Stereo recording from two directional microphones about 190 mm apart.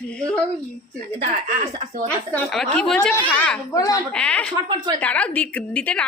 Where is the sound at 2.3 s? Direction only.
5° left (ahead or behind).